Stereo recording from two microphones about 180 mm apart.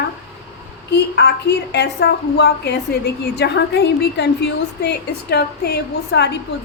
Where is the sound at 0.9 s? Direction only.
70° left (ahead or behind).